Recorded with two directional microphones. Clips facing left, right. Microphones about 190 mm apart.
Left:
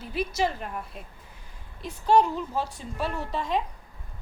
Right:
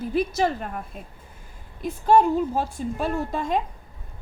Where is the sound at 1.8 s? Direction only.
50° right (ahead or behind).